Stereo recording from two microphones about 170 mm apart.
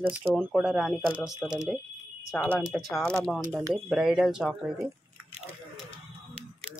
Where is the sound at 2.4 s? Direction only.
10° left (ahead or behind).